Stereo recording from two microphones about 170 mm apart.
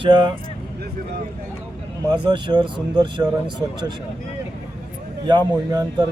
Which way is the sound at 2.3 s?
25° right (ahead or behind).